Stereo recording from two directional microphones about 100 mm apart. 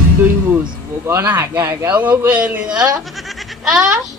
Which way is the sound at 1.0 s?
20° right (ahead or behind).